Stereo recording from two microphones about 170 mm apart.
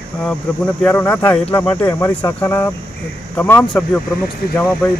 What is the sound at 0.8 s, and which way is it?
Speech, 10° left (ahead or behind).